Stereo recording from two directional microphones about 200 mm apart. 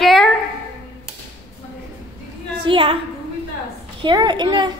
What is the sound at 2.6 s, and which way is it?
Speech, 25° right (ahead or behind).